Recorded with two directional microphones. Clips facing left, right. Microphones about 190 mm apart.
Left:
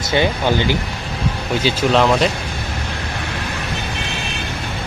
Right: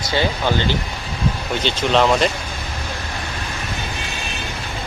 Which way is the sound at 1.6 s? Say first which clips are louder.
Left 1 dB; centre (ahead or behind).